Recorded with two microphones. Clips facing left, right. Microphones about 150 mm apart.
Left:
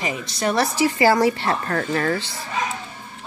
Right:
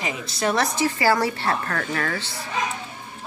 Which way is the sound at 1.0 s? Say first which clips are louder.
Left 5 dB; 15° left (ahead or behind).